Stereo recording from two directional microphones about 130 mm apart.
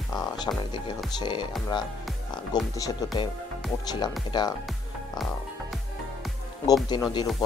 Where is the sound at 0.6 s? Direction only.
35° left (ahead or behind).